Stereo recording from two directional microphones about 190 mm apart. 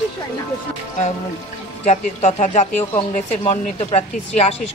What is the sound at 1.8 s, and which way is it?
A woman's voice, 35° left (ahead or behind).